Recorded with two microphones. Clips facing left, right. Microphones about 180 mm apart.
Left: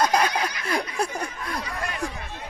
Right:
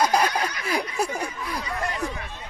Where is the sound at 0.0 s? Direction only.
10° right (ahead or behind).